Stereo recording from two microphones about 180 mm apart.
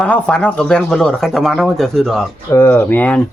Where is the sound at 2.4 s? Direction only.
15° left (ahead or behind).